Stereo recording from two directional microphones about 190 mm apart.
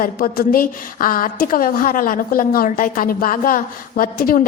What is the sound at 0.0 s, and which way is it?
A woman's voice, 50° left (ahead or behind).